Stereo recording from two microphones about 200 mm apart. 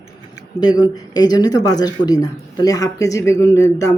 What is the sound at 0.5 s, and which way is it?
Speech, 20° left (ahead or behind).